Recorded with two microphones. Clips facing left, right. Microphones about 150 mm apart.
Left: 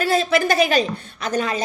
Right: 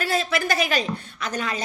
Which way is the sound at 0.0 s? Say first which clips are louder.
Left 6 dB; 25° left (ahead or behind).